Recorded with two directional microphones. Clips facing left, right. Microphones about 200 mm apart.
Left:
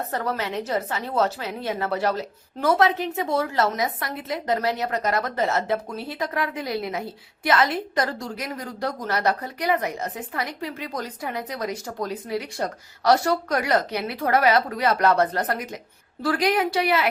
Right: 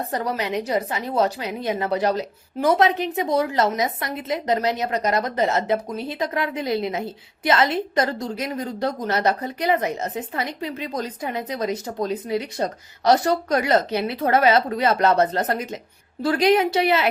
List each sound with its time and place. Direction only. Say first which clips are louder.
0.1 s a woman's voice: right 3 dB; 15° right (ahead or behind)